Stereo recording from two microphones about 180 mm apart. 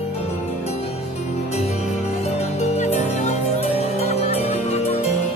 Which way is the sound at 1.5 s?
35° left (ahead or behind).